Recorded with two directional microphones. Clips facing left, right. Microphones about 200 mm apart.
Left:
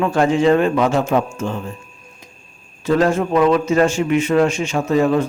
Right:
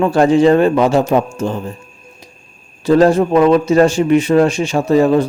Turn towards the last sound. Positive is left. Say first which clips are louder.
# right 4 dB
turn(degrees=-35)  # may be behind; listen again after turning